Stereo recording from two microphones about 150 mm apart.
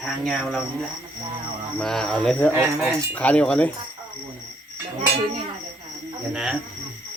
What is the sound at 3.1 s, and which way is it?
Speech, 10° left (ahead or behind).